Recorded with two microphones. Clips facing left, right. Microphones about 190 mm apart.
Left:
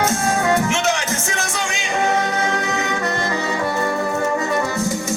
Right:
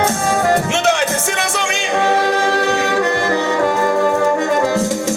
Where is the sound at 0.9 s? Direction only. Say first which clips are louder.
Right 5 dB; 65° right (ahead or behind).